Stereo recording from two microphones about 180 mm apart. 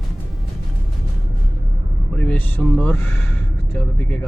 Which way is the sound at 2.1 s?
10° left (ahead or behind).